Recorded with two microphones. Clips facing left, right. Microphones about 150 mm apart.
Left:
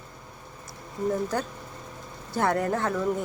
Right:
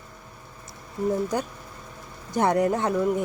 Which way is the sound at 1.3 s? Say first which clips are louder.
Right 2 dB; 15° right (ahead or behind).